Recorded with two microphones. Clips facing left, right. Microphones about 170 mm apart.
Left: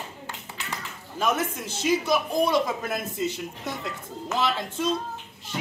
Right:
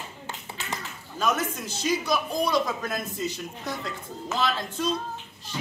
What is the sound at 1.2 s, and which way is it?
A man's voice, 25° left (ahead or behind).